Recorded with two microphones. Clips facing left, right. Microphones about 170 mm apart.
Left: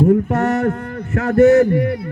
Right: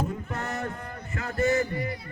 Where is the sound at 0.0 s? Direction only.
70° left (ahead or behind).